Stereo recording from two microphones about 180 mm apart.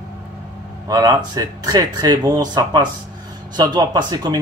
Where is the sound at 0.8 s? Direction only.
20° right (ahead or behind).